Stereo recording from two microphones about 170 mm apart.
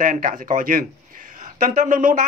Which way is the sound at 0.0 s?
55° right (ahead or behind).